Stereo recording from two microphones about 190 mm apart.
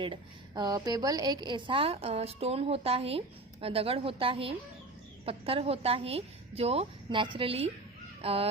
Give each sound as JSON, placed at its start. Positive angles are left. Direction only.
{"t": 0.0, "sound": "a woman's voice", "side_deg": -25}